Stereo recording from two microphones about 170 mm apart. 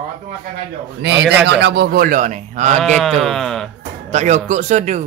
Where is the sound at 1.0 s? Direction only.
90° right; by 2.8 s 45° right (ahead or behind).